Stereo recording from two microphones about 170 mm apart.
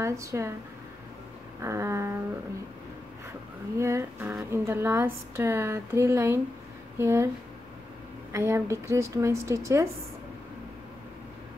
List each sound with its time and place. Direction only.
0.0 s speech: 15° right (ahead or behind)
1.6 s speech: 15° right (ahead or behind)
3.7 s speech: 15° right (ahead or behind)
8.3 s speech: 15° right (ahead or behind)